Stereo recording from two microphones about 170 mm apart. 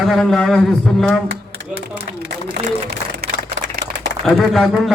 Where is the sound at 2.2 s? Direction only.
65° right (ahead or behind).